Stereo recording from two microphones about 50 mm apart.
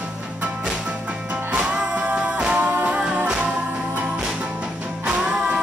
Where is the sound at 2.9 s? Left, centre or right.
Centre.